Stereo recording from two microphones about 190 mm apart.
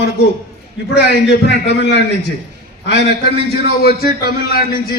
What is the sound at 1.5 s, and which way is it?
Speech, 60° left (ahead or behind).